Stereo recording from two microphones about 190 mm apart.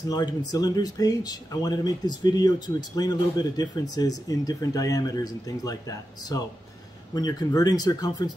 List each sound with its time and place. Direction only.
0.5 s speech: 20° left (ahead or behind)